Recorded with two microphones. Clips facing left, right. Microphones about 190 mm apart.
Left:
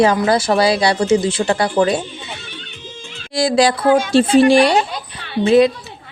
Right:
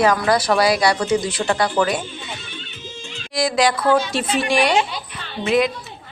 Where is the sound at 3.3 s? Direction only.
30° left (ahead or behind).